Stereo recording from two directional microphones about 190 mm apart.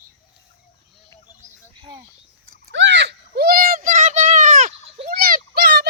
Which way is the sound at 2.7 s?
70° right (ahead or behind).